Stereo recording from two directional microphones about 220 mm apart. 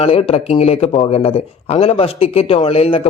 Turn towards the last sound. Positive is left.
turn(degrees=25)  # may be behind; listen again after turning